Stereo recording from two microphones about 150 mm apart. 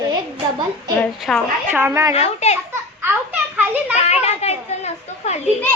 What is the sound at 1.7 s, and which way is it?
Child singing, 15° right (ahead or behind).